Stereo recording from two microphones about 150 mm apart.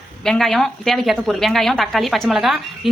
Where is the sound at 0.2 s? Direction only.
5° left (ahead or behind).